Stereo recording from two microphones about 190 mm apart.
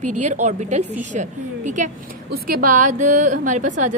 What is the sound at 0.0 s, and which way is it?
A woman's voice, 40° right (ahead or behind).